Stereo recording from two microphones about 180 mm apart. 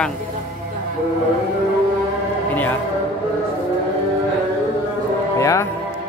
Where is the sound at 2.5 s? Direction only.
10° left (ahead or behind).